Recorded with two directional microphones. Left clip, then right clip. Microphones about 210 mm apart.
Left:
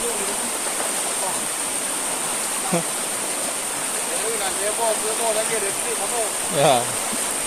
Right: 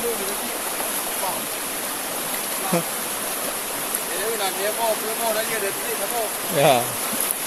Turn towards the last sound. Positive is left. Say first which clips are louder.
# even
turn(degrees=-5)  # may be behind; listen again after turning